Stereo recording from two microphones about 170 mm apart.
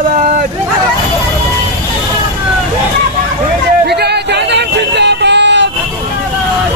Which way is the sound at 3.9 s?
75° right (ahead or behind).